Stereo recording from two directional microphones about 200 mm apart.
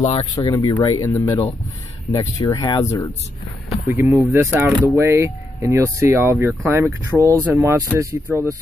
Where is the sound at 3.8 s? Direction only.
15° right (ahead or behind).